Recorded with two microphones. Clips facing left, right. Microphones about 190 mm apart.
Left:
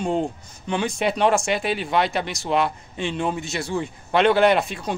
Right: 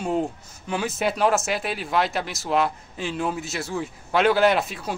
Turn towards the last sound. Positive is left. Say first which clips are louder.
# left 2 dB
turn(degrees=-5)  # may be behind; listen again after turning